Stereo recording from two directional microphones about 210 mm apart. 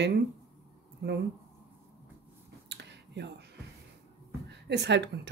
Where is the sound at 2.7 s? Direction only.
55° right (ahead or behind).